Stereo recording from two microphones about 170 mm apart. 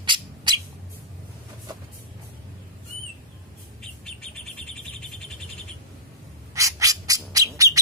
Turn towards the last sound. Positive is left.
turn(degrees=-20)  # may be behind; listen again after turning